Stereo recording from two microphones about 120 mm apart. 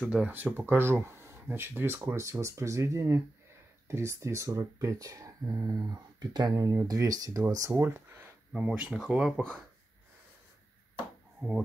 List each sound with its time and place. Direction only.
0.0 s speech: 10° right (ahead or behind); by 7.5 s 30° right (ahead or behind)
7.7 s a sound: 20° right (ahead or behind)
8.6 s speech: 10° right (ahead or behind)